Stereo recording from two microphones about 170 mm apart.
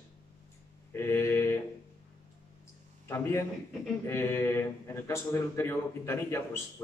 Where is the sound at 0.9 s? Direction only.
15° left (ahead or behind).